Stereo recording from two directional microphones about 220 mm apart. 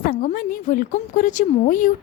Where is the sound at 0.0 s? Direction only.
40° left (ahead or behind).